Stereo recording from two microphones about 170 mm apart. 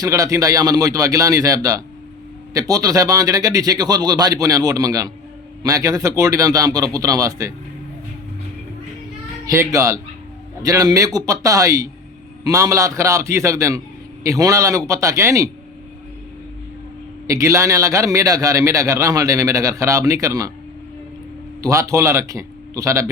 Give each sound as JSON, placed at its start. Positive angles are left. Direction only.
{"t": 0.0, "sound": "a man's voice", "side_deg": -20}
{"t": 9.5, "sound": "a man's voice", "side_deg": -20}
{"t": 17.2, "sound": "a man's voice", "side_deg": -20}
{"t": 21.6, "sound": "a man's voice", "side_deg": -20}